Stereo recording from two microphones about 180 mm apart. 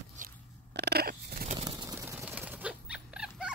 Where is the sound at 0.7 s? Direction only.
60° right (ahead or behind).